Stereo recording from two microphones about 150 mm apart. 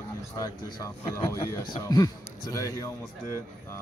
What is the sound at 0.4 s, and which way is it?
Speech, 25° left (ahead or behind).